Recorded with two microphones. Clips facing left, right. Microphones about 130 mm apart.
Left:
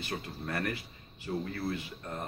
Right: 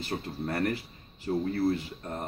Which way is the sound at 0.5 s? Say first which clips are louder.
Right 5 dB; 35° right (ahead or behind).